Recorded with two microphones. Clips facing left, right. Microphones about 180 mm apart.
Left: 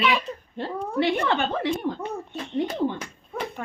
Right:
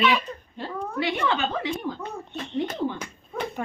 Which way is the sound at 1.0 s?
55° left (ahead or behind).